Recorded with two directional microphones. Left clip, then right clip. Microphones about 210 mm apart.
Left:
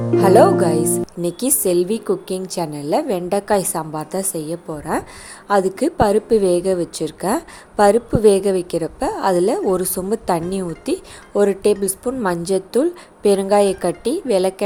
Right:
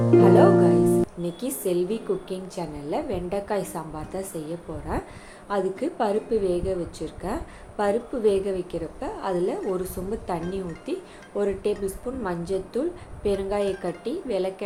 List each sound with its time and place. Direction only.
0.2 s a woman's voice: 55° left (ahead or behind)
0.8 s music: centre (ahead or behind)
1.2 s a woman's voice: 55° left (ahead or behind)